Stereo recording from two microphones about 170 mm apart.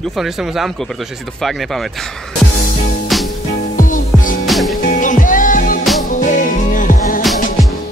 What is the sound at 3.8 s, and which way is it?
Music, 50° left (ahead or behind).